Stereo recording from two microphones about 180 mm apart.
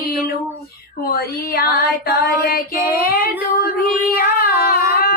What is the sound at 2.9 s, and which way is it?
Singing, 55° left (ahead or behind).